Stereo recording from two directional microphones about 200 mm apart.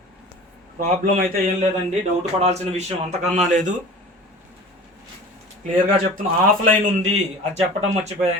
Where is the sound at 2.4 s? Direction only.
35° right (ahead or behind).